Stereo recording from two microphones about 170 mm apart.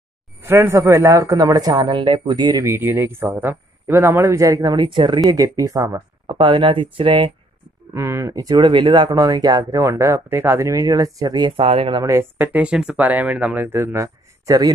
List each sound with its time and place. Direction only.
0.4 s speech: 15° right (ahead or behind)
6.3 s speech: 30° right (ahead or behind)
7.9 s speech: 15° right (ahead or behind); by 12.0 s 35° right (ahead or behind)
12.0 s speech: 15° right (ahead or behind)